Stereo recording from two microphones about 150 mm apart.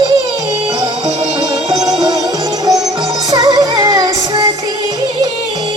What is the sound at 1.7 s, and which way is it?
Music, 25° right (ahead or behind).